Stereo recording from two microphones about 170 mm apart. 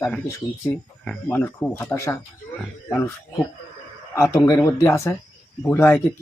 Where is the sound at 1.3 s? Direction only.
15° left (ahead or behind).